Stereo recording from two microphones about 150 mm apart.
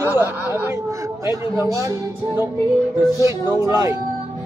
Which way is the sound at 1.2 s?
20° right (ahead or behind).